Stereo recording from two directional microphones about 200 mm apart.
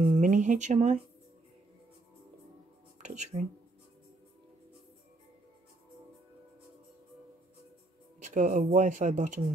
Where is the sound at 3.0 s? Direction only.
35° right (ahead or behind).